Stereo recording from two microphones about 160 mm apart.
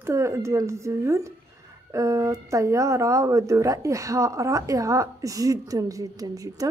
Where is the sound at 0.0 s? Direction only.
20° right (ahead or behind).